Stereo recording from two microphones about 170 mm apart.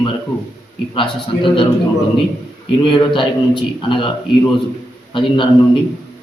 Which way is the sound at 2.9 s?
30° left (ahead or behind).